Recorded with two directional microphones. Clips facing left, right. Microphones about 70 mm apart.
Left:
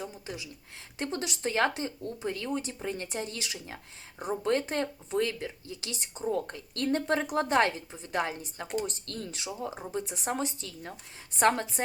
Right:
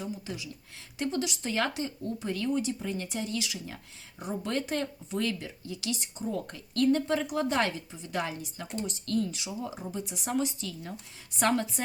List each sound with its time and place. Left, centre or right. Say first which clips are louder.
0.0 s speech: right 2 dB; left